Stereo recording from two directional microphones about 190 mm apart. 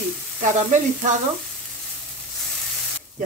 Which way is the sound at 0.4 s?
40° right (ahead or behind).